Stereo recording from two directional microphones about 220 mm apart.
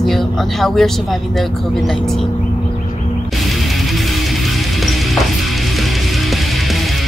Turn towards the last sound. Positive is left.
turn(degrees=0)  # may be behind; listen again after turning